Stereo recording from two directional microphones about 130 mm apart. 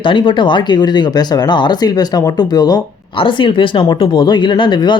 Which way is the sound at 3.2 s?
40° left (ahead or behind).